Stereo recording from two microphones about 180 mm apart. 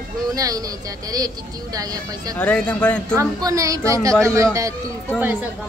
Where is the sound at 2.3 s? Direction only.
5° left (ahead or behind).